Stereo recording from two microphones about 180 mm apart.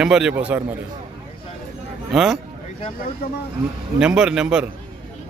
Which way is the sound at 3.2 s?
60° left (ahead or behind).